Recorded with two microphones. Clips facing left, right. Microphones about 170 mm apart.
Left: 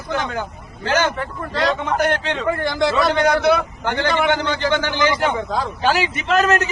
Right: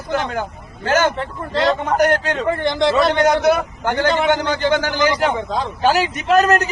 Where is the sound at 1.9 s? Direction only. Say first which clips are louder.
Right 3 dB; 40° right (ahead or behind).